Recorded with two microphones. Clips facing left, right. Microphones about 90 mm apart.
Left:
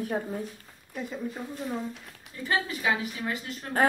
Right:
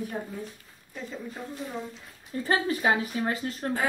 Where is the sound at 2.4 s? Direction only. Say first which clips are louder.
Right 3 dB; 40° right (ahead or behind).